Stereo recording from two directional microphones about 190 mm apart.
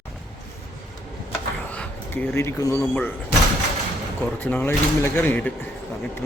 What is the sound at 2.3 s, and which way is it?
Speech, 15° left (ahead or behind).